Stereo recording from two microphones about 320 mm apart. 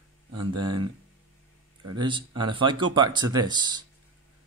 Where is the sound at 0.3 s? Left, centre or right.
Right.